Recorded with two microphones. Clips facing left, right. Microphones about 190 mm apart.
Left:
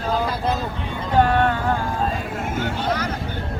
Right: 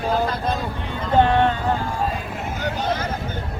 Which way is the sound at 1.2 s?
20° right (ahead or behind).